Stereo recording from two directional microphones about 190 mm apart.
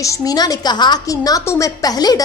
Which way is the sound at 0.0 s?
20° left (ahead or behind).